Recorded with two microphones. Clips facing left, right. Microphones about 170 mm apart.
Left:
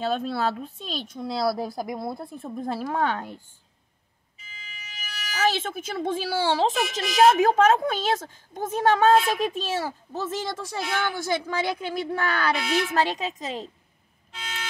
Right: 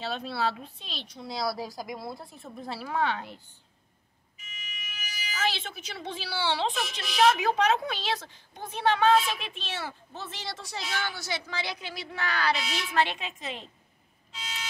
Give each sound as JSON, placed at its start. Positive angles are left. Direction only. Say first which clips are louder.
{"t": 0.0, "sound": "speech", "louder": "left 5 dB", "side_deg": 50}
{"t": 5.1, "sound": "music", "louder": "left 4 dB", "side_deg": 80}
{"t": 5.4, "sound": "speech", "louder": "left 7 dB", "side_deg": 45}
{"t": 14.3, "sound": "vehicle", "louder": "left 4 dB", "side_deg": 55}